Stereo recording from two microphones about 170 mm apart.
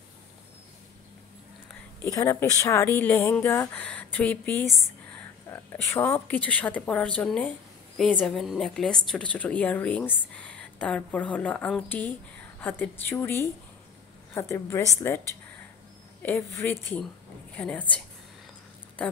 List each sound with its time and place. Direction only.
2.0 s a woman's voice: 20° left (ahead or behind)